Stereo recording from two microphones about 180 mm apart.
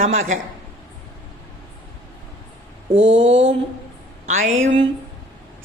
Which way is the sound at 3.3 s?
35° right (ahead or behind).